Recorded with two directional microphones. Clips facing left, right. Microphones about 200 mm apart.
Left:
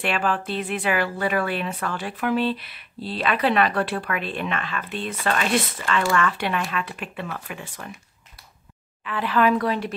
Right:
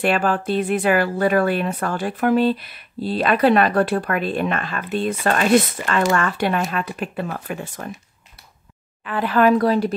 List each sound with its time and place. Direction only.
0.0 s speech: 45° right (ahead or behind)
9.0 s speech: 45° right (ahead or behind)